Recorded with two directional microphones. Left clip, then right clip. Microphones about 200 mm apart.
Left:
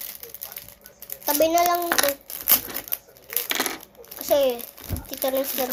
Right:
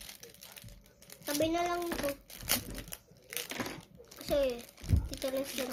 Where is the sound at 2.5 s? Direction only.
15° right (ahead or behind).